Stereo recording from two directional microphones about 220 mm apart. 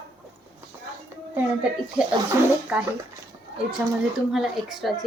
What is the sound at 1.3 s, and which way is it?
A woman's voice, 5° right (ahead or behind).